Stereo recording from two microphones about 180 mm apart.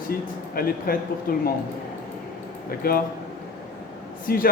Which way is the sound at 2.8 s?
55° left (ahead or behind).